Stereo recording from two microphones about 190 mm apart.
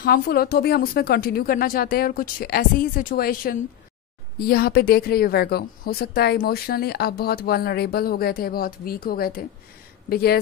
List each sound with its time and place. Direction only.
0.0 s a woman's voice: 50° left (ahead or behind)